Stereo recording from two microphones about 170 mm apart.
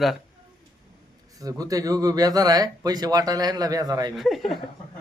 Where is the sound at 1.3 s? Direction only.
20° right (ahead or behind).